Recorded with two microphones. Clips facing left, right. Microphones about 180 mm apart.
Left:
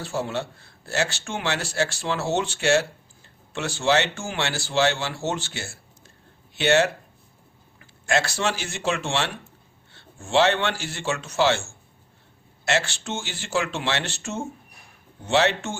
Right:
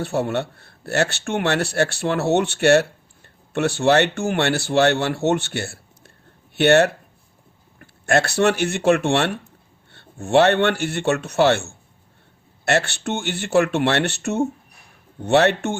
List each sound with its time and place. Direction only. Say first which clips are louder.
0.0 s speech: right 6 dB; 60° right (ahead or behind)